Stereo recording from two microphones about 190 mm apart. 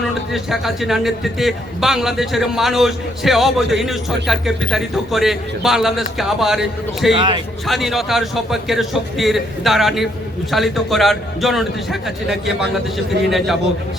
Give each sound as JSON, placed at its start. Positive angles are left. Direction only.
{"t": 0.3, "sound": "a man's voice", "side_deg": 0}
{"t": 7.2, "sound": "a man's voice", "side_deg": -25}
{"t": 7.7, "sound": "a man's voice", "side_deg": 0}